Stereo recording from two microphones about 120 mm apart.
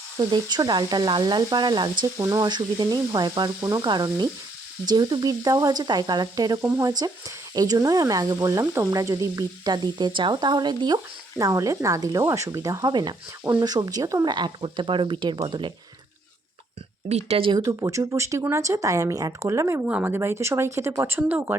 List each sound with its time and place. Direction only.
0.2 s speech: 35° right (ahead or behind)
2.1 s speech: 25° right (ahead or behind)
12.9 s speech: 40° right (ahead or behind)
14.3 s speech: 40° right (ahead or behind)
17.1 s speech: 60° right (ahead or behind)
17.5 s speech: 25° right (ahead or behind)
19.8 s speech: 15° right (ahead or behind)